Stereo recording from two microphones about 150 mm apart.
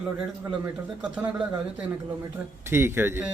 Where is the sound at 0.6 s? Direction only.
10° right (ahead or behind).